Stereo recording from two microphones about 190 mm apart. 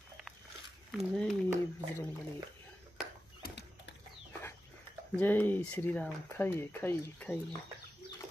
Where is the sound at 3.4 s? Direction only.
60° left (ahead or behind).